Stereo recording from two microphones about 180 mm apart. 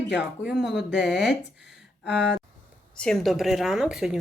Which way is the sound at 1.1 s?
75° left (ahead or behind).